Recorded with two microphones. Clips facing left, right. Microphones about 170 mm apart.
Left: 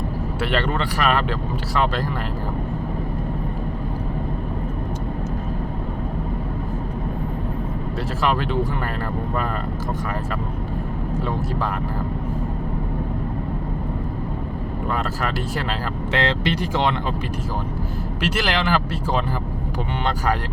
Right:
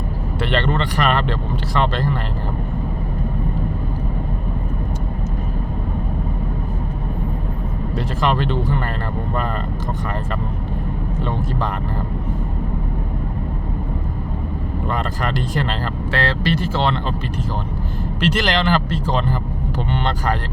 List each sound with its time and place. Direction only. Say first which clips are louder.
0.4 s speech: right 3 dB; 10° left (ahead or behind)
8.2 s speech: right 1 dB; 5° left (ahead or behind)
15.2 s speech: right 3 dB; 5° left (ahead or behind)
16.1 s speech: right 1 dB; 20° left (ahead or behind)
18.2 s speech: right 4 dB; 5° left (ahead or behind)